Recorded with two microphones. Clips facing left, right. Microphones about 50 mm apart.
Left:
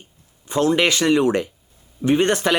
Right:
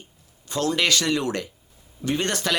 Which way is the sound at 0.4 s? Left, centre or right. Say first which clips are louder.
Left 5 dB; left.